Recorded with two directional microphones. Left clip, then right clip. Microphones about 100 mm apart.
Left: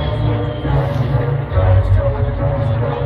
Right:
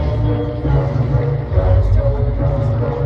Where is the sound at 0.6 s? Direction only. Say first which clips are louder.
Left 1 dB; 25° right (ahead or behind).